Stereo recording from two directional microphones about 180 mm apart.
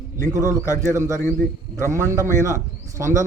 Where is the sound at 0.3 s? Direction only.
20° right (ahead or behind).